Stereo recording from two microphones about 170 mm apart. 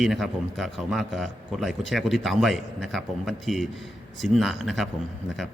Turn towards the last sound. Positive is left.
turn(degrees=0)  # may be behind; listen again after turning